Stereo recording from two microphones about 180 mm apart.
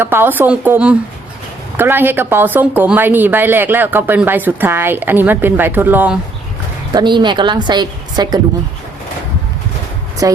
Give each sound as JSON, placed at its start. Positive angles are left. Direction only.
{"t": 0.0, "sound": "speech", "side_deg": -10}
{"t": 6.9, "sound": "a woman's voice", "side_deg": -25}
{"t": 10.2, "sound": "speech", "side_deg": -20}